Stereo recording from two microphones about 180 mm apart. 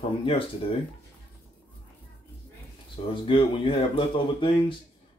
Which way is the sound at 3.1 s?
30° left (ahead or behind).